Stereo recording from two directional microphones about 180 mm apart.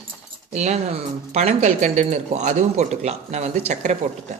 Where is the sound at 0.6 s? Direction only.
40° right (ahead or behind).